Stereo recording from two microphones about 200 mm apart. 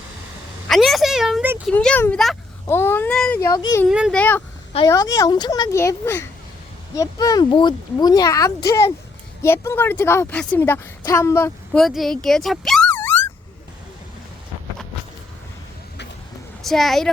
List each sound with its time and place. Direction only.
0.7 s a sound: centre (ahead or behind)
1.7 s speech: 5° left (ahead or behind)
2.6 s speech: 10° left (ahead or behind)
3.8 s speech: centre (ahead or behind)
4.2 s a woman's voice: 10° left (ahead or behind)
11.8 s speech: centre (ahead or behind)
16.6 s speech: centre (ahead or behind)